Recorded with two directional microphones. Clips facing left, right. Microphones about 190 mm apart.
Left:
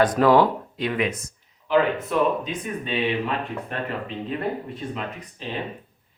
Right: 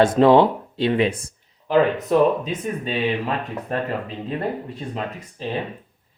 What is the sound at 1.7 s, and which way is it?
Speech, 45° right (ahead or behind).